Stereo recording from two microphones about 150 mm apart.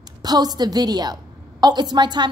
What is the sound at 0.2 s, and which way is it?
A woman's voice, 25° right (ahead or behind).